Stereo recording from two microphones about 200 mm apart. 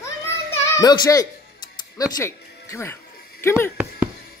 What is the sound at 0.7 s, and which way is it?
A child's voice, 20° left (ahead or behind).